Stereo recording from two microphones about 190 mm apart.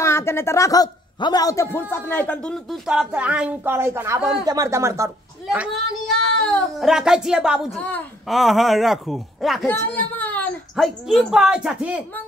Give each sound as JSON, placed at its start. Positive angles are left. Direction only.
{"t": 0.0, "sound": "a man's voice", "side_deg": 15}
{"t": 5.5, "sound": "a child's voice", "side_deg": 0}